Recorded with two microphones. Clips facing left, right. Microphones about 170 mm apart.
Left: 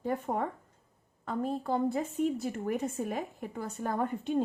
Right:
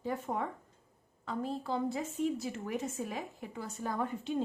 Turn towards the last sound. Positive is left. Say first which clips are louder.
# left 4 dB
turn(degrees=50)  # may be behind; listen again after turning